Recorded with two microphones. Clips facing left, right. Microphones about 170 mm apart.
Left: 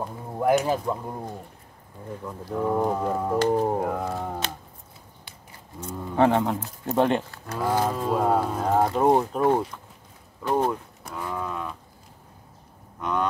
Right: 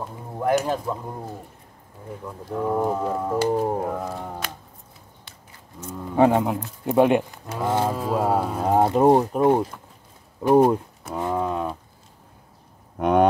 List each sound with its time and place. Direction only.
0.0 s a sound: 5° left (ahead or behind)
2.2 s speech: 5° right (ahead or behind)
6.1 s speech: 10° right (ahead or behind)
7.9 s speech: 5° right (ahead or behind)
11.1 s speech: 25° right (ahead or behind)
13.0 s music: 60° right (ahead or behind)